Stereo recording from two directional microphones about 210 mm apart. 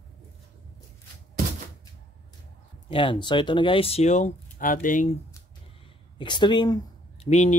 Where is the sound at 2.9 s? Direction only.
25° left (ahead or behind).